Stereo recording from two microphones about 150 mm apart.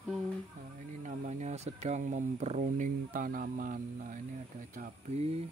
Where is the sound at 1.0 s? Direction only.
55° right (ahead or behind).